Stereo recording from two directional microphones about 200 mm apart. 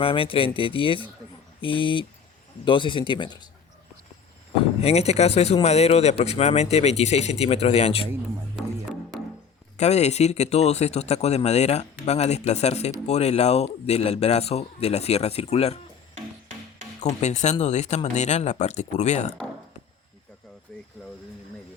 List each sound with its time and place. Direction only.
0.0 s speech: 25° left (ahead or behind)
4.8 s speech: 30° left (ahead or behind)
8.1 s music: 5° right (ahead or behind)
9.7 s speech: 35° left (ahead or behind)
17.0 s speech: 35° left (ahead or behind)
20.7 s a sound: 5° left (ahead or behind)